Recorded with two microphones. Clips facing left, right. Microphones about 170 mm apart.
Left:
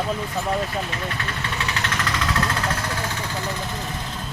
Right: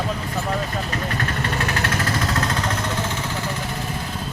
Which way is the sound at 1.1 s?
45° right (ahead or behind).